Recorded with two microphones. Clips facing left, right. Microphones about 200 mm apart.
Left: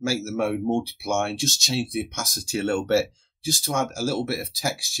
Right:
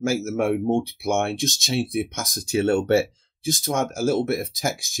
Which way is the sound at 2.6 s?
25° right (ahead or behind).